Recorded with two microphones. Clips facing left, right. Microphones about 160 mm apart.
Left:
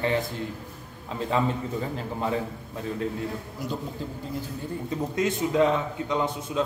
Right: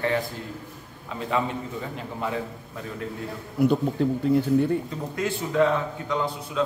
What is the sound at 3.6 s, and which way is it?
A man's voice, 60° right (ahead or behind).